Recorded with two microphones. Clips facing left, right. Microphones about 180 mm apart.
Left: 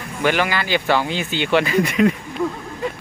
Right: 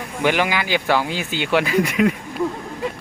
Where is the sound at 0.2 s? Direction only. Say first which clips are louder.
Even; 15° right (ahead or behind).